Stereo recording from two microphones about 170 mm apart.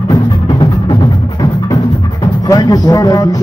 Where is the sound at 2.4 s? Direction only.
20° left (ahead or behind).